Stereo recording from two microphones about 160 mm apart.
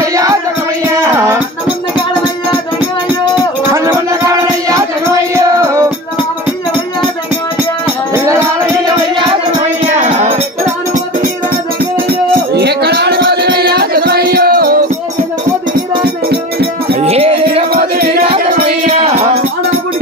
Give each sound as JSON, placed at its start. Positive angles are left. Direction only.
{"t": 0.0, "sound": "music", "side_deg": -20}
{"t": 3.7, "sound": "music", "side_deg": -20}
{"t": 8.1, "sound": "music", "side_deg": -15}
{"t": 12.5, "sound": "music", "side_deg": -90}
{"t": 16.0, "sound": "music", "side_deg": -75}
{"t": 17.0, "sound": "music", "side_deg": -40}
{"t": 17.9, "sound": "music", "side_deg": -75}
{"t": 18.2, "sound": "music", "side_deg": -35}